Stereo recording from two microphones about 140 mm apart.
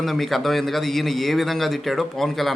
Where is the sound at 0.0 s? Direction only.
Centre (ahead or behind).